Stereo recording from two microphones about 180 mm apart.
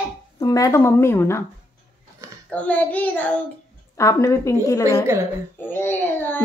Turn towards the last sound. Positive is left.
turn(degrees=10)  # may be behind; listen again after turning